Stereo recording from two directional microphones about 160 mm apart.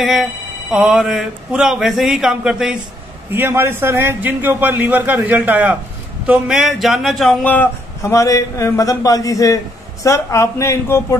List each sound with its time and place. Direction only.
0.0 s speech: centre (ahead or behind)
3.3 s a man's voice: 15° right (ahead or behind); by 11.1 s 15° left (ahead or behind)